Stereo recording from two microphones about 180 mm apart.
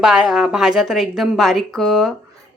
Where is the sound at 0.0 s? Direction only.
5° right (ahead or behind).